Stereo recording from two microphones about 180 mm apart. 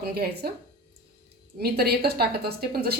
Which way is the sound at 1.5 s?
60° right (ahead or behind).